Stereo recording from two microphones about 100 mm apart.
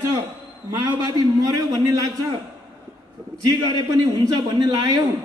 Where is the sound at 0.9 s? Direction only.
45° right (ahead or behind).